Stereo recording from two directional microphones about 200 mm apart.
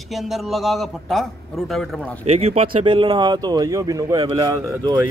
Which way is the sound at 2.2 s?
30° right (ahead or behind).